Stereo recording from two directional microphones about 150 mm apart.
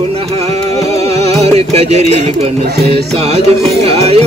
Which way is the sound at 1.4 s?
45° right (ahead or behind).